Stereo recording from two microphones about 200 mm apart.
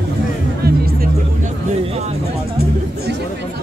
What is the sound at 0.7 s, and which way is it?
Music, 50° right (ahead or behind).